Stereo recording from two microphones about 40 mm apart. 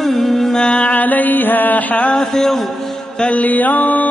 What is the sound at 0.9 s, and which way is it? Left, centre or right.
Mantra, left.